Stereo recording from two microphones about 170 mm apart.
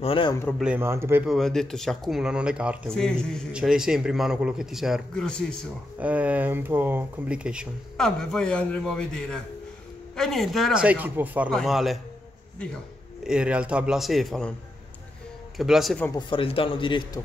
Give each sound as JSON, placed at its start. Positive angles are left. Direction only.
{"t": 0.0, "sound": "a man's voice", "side_deg": 30}
{"t": 0.6, "sound": "speech", "side_deg": -10}
{"t": 1.2, "sound": "a man's voice", "side_deg": 0}
{"t": 2.9, "sound": "a man's voice", "side_deg": 5}
{"t": 5.9, "sound": "a man's voice", "side_deg": -10}
{"t": 13.2, "sound": "a man's voice", "side_deg": -5}
{"t": 15.5, "sound": "a man's voice", "side_deg": 0}
{"t": 16.1, "sound": "a man's voice", "side_deg": 25}